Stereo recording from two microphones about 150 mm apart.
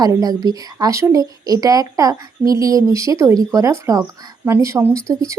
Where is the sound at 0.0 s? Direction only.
25° right (ahead or behind).